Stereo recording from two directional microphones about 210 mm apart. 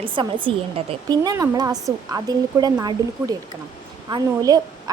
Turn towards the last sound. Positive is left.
turn(degrees=-20)  # may be behind; listen again after turning